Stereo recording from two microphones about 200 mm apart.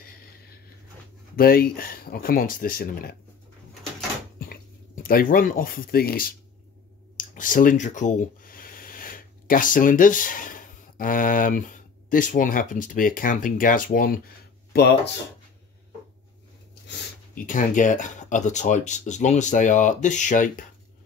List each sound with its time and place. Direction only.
1.3 s speech: 50° left (ahead or behind)
5.0 s speech: 45° left (ahead or behind)
14.7 s speech: 55° left (ahead or behind)
17.4 s speech: 40° left (ahead or behind)